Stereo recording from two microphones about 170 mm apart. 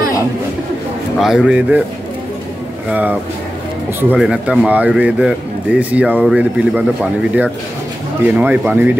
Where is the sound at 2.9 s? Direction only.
10° right (ahead or behind).